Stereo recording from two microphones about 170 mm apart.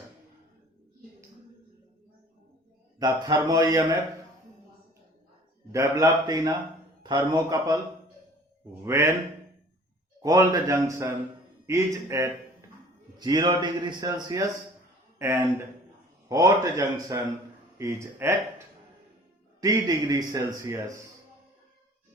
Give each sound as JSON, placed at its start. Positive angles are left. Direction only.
{"t": 3.0, "sound": "a man's voice", "side_deg": -25}
{"t": 5.7, "sound": "a man's voice", "side_deg": -20}
{"t": 8.8, "sound": "a man's voice", "side_deg": -15}
{"t": 10.2, "sound": "a man's voice", "side_deg": -20}
{"t": 13.1, "sound": "a man's voice", "side_deg": -25}
{"t": 19.6, "sound": "a man's voice", "side_deg": -25}